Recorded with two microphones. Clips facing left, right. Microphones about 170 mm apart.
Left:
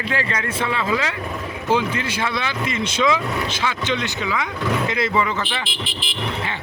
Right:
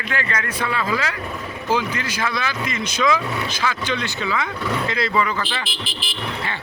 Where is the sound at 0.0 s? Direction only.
30° left (ahead or behind).